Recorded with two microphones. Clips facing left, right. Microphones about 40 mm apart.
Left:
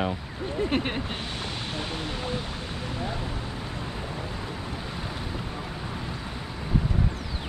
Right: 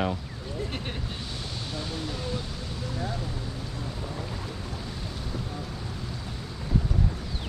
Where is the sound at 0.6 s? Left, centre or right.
Left.